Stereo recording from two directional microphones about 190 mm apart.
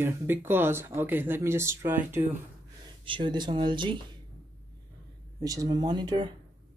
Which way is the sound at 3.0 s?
25° right (ahead or behind).